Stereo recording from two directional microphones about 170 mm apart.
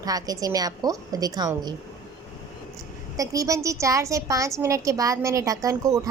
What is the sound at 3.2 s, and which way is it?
A woman's voice, 20° right (ahead or behind).